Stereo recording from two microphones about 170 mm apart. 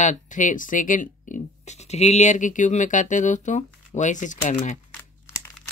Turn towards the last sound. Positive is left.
turn(degrees=45)  # may be behind; listen again after turning